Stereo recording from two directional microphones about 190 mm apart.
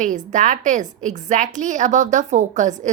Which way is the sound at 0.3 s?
40° right (ahead or behind).